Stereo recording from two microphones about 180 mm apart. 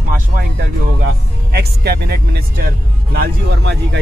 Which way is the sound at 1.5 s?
60° right (ahead or behind).